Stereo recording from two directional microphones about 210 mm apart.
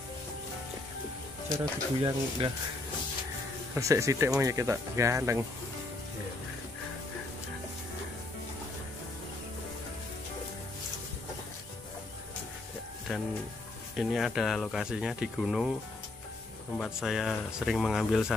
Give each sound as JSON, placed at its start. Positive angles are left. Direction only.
{"t": 1.6, "sound": "speech", "side_deg": -15}
{"t": 3.7, "sound": "speech", "side_deg": -15}
{"t": 13.1, "sound": "speech", "side_deg": 0}
{"t": 16.7, "sound": "speech", "side_deg": 0}